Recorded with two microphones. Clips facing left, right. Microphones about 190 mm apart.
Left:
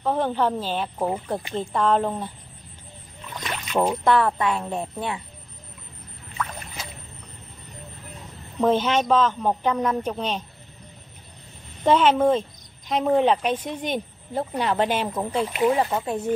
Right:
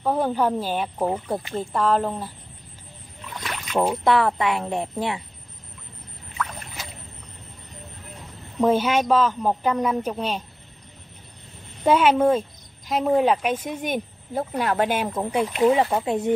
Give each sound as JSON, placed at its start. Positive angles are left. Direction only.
{"t": 0.0, "sound": "speech", "side_deg": -10}
{"t": 3.7, "sound": "speech", "side_deg": -10}
{"t": 8.5, "sound": "speech", "side_deg": -10}
{"t": 11.8, "sound": "speech", "side_deg": -10}
{"t": 15.6, "sound": "speech", "side_deg": -20}